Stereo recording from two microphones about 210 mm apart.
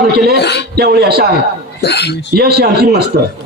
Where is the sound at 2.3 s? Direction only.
50° right (ahead or behind).